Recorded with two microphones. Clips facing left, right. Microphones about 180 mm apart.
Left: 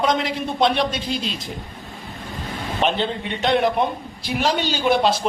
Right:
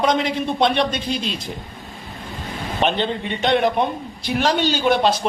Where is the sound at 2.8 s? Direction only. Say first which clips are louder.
Right 1 dB; centre (ahead or behind).